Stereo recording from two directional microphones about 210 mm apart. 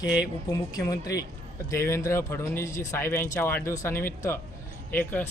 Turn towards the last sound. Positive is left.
turn(degrees=10)  # may be behind; listen again after turning